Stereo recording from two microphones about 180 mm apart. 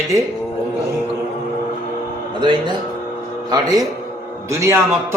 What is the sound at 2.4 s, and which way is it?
A man's voice, 25° right (ahead or behind).